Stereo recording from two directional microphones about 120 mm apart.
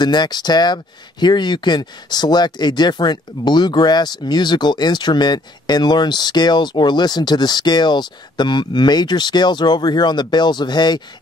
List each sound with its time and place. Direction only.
0.0 s speech: 35° left (ahead or behind)